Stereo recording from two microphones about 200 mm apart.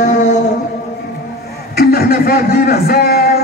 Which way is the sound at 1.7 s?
50° left (ahead or behind).